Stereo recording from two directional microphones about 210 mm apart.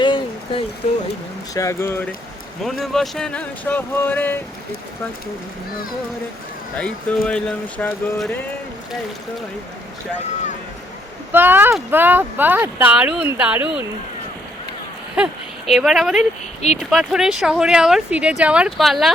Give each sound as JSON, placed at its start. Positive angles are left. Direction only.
{"t": 0.0, "sound": "a sound", "side_deg": 20}
{"t": 1.5, "sound": "speech", "side_deg": 15}
{"t": 2.6, "sound": "speech", "side_deg": 0}
{"t": 6.7, "sound": "speech", "side_deg": 5}
{"t": 11.3, "sound": "speech", "side_deg": -10}
{"t": 15.1, "sound": "speech", "side_deg": 0}